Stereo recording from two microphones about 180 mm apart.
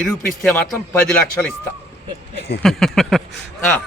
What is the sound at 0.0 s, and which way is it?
Speech, 5° left (ahead or behind).